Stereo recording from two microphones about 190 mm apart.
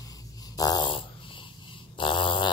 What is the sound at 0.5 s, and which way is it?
Dog, 20° left (ahead or behind).